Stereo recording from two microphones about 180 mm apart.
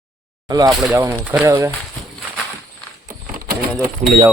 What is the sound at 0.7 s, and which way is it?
Speech, centre (ahead or behind).